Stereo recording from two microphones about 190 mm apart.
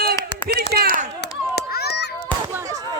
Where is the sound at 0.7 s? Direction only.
55° right (ahead or behind).